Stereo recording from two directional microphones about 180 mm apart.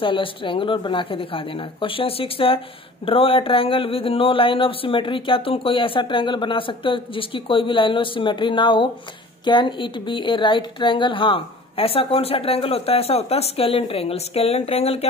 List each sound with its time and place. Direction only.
0.0 s a woman's voice: 30° left (ahead or behind)